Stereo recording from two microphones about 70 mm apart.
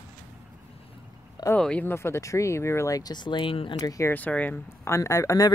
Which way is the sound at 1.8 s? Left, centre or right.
Left.